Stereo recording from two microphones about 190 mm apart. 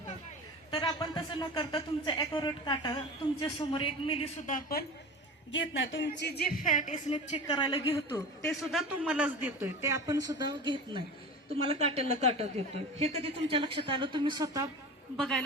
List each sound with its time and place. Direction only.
0.7 s speech: 25° left (ahead or behind); by 4.9 s 50° left (ahead or behind)
5.5 s speech: 85° left; by 7.0 s 40° left (ahead or behind)
7.4 s speech: 20° left (ahead or behind)
8.5 s a man's voice: centre (ahead or behind); by 14.7 s 20° right (ahead or behind)
15.1 s a woman's voice: centre (ahead or behind)